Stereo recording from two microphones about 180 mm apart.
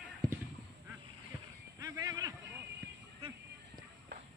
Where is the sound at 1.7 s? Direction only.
20° right (ahead or behind).